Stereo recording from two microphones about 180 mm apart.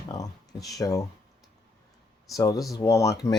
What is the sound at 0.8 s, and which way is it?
Speech, 20° left (ahead or behind).